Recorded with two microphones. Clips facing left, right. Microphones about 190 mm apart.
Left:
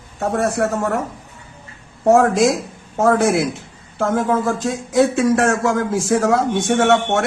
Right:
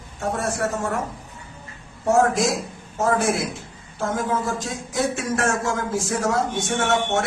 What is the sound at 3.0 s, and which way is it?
A man's voice, 70° left (ahead or behind).